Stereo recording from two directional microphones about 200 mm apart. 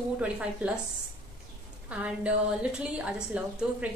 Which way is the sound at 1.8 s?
5° right (ahead or behind).